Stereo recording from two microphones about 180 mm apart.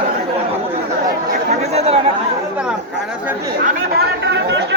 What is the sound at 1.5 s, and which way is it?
Speech, 35° right (ahead or behind).